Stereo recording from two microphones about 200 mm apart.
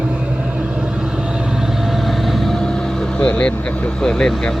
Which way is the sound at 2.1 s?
Centre (ahead or behind).